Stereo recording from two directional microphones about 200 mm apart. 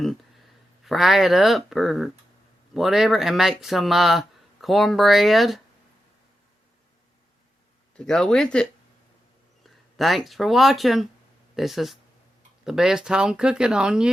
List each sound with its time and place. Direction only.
0.9 s speech: centre (ahead or behind)
7.9 s speech: 5° left (ahead or behind)
9.6 s speech: centre (ahead or behind)